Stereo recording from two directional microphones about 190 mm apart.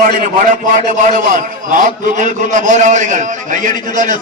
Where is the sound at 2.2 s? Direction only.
40° right (ahead or behind).